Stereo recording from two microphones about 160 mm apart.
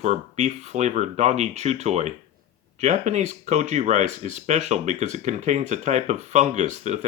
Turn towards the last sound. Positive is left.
turn(degrees=-45)  # may be behind; listen again after turning